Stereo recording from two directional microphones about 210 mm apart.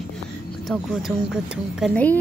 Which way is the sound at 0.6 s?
Centre (ahead or behind).